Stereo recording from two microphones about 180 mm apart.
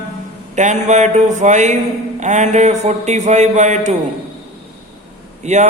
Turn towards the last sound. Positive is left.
turn(degrees=-40)  # may be behind; listen again after turning